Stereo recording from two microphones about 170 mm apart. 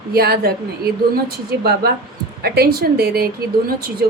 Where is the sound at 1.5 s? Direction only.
70° right (ahead or behind).